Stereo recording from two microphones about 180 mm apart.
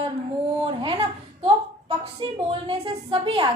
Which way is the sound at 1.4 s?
30° right (ahead or behind).